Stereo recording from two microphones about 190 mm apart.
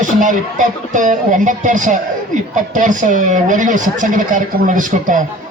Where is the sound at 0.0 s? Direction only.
40° right (ahead or behind).